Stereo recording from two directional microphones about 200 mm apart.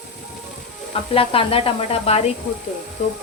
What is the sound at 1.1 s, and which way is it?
Speech, 25° left (ahead or behind).